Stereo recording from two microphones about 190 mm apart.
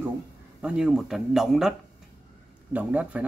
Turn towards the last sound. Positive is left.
turn(degrees=-5)  # may be behind; listen again after turning